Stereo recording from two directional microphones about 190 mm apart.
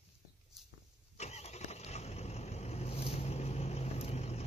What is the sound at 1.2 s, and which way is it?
Vehicle, 35° left (ahead or behind).